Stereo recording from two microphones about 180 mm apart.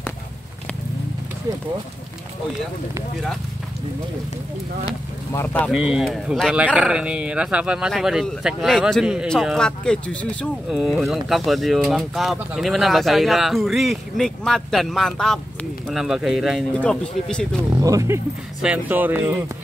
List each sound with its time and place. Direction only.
5.3 s speech: 10° left (ahead or behind)
5.7 s speech: 5° right (ahead or behind)
17.8 s speech: 15° right (ahead or behind)